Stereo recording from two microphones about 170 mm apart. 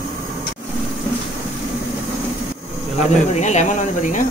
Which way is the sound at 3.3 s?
40° left (ahead or behind).